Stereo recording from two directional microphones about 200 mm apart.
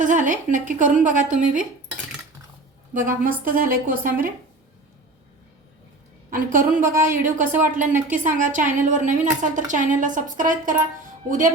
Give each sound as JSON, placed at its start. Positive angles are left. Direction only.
{"t": 0.0, "sound": "a woman's voice", "side_deg": -40}
{"t": 3.2, "sound": "a woman's voice", "side_deg": -45}
{"t": 6.3, "sound": "a woman's voice", "side_deg": -45}
{"t": 6.8, "sound": "a woman's voice", "side_deg": -10}
{"t": 7.1, "sound": "a woman's voice", "side_deg": -40}